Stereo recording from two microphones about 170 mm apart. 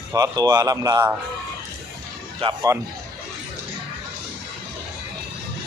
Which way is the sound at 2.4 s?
35° right (ahead or behind).